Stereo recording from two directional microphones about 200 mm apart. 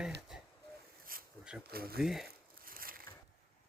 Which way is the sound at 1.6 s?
50° right (ahead or behind).